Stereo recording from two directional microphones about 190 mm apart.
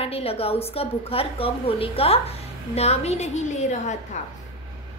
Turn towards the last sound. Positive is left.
turn(degrees=40)  # may be behind; listen again after turning